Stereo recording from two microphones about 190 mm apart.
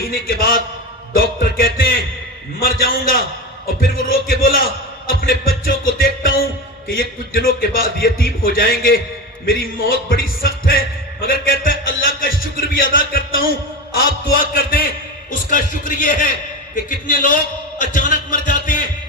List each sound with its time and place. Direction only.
0.1 s a man's voice: 50° left (ahead or behind)